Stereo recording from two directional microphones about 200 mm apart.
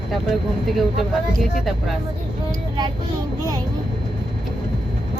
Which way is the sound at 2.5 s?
20° right (ahead or behind).